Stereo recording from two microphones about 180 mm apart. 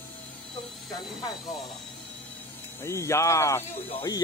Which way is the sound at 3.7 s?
30° left (ahead or behind).